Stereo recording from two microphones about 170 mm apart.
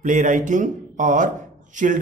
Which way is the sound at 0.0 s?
50° right (ahead or behind).